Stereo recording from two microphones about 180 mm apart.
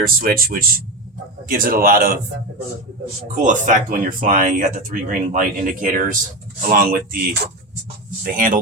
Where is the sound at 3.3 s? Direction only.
45° right (ahead or behind).